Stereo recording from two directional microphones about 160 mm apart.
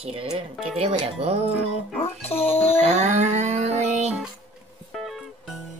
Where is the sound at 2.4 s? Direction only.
40° left (ahead or behind).